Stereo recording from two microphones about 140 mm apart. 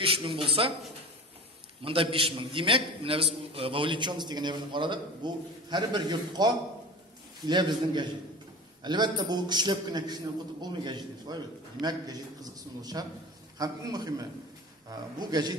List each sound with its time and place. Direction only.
0.0 s speech: 40° right (ahead or behind)
1.8 s a man's voice: 40° right (ahead or behind)